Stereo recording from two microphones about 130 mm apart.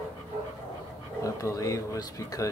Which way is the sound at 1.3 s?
25° left (ahead or behind).